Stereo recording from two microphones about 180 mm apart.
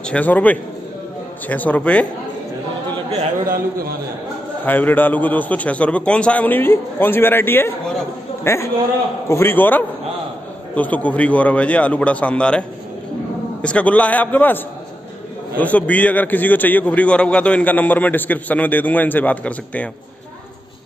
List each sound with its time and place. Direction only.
0.0 s a man's voice: 10° left (ahead or behind)
3.1 s a sound: 50° right (ahead or behind)
4.6 s a man's voice: 10° left (ahead or behind)